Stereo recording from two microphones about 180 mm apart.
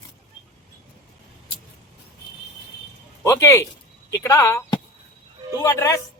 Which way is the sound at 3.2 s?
15° left (ahead or behind).